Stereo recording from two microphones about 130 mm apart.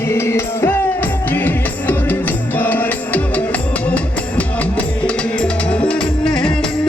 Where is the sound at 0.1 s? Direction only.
20° left (ahead or behind).